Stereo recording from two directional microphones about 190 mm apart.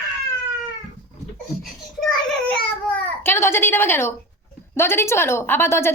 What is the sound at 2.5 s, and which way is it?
Babbling, 10° left (ahead or behind).